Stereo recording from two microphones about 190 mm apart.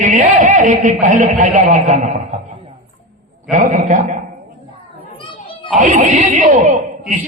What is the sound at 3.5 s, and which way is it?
Speech, 40° right (ahead or behind).